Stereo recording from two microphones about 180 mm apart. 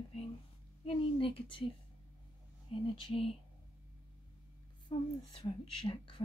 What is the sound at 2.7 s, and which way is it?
Speech, 30° left (ahead or behind).